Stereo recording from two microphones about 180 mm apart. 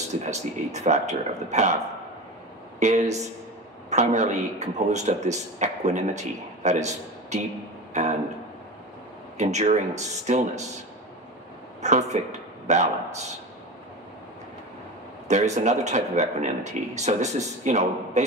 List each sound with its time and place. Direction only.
0.1 s speech: 40° right (ahead or behind)
2.8 s speech: 40° right (ahead or behind)
9.4 s speech: 40° right (ahead or behind)
11.8 s a man's voice: 40° right (ahead or behind)
15.2 s speech: 40° right (ahead or behind)